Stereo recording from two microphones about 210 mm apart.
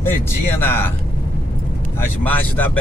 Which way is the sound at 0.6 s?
10° left (ahead or behind).